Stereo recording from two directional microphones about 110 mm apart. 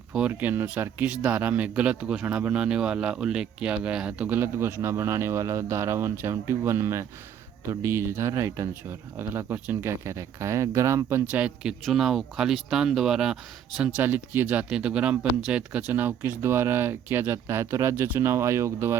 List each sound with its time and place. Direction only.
0.1 s speech: 10° right (ahead or behind)
11.3 s speech: 10° right (ahead or behind)